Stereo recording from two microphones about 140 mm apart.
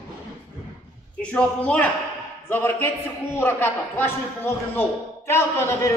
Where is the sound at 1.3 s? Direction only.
10° left (ahead or behind).